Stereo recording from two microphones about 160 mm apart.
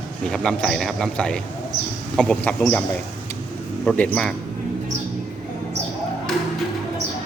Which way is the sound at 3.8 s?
10° left (ahead or behind).